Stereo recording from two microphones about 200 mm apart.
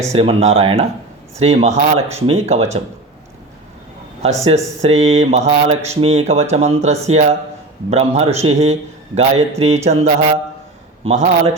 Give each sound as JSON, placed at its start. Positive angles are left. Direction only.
{"t": 0.1, "sound": "speech", "side_deg": -30}
{"t": 4.2, "sound": "speech", "side_deg": -35}